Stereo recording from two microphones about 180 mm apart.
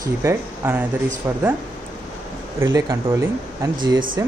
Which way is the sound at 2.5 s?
15° right (ahead or behind).